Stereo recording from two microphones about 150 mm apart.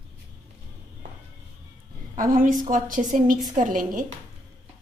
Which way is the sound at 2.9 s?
60° right (ahead or behind).